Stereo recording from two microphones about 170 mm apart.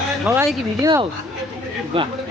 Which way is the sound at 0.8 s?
20° right (ahead or behind).